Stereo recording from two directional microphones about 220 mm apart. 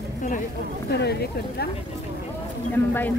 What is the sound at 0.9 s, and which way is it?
Speech, 45° left (ahead or behind).